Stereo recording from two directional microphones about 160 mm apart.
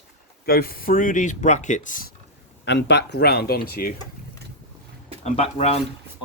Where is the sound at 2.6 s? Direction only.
90° left; by 4.0 s 70° left (ahead or behind).